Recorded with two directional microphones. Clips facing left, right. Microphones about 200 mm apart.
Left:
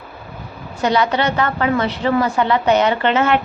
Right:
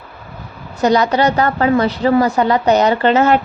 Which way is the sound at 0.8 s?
40° right (ahead or behind).